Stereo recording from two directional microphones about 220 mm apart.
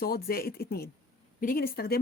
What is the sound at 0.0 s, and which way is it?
Speech, 45° left (ahead or behind).